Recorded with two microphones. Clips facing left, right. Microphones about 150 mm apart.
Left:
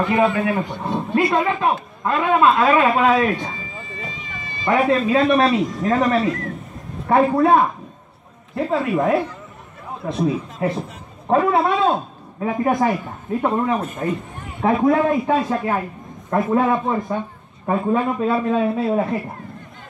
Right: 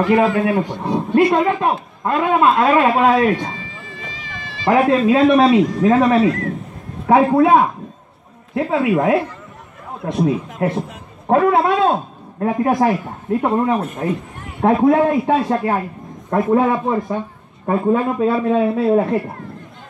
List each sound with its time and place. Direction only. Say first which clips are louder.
0.0 s a man's voice: right 3 dB; centre (ahead or behind)
3.5 s cat: even; 90° right
4.7 s a man's voice: right 3 dB; centre (ahead or behind)